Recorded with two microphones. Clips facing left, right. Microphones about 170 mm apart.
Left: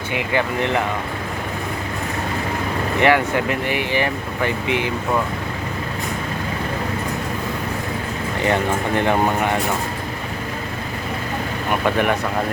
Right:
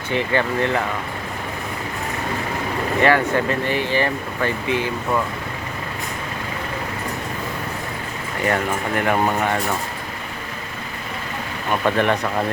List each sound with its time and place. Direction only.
0.1 s speech: 15° left (ahead or behind)
3.0 s speech: 15° left (ahead or behind)
9.0 s speech: 20° left (ahead or behind)
11.7 s speech: 10° left (ahead or behind)